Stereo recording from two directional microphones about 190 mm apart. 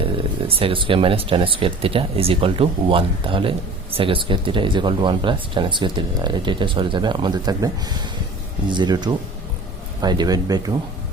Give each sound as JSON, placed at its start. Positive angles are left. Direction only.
{"t": 0.0, "sound": "speech", "side_deg": -30}